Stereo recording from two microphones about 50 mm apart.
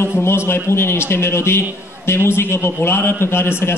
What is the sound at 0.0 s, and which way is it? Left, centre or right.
A man's voice, left.